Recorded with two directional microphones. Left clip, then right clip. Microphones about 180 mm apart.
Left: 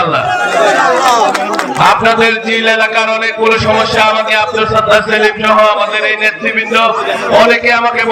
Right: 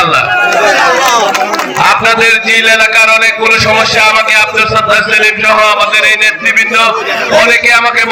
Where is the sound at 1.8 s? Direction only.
35° left (ahead or behind).